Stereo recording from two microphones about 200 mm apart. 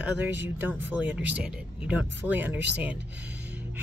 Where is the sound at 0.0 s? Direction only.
10° right (ahead or behind).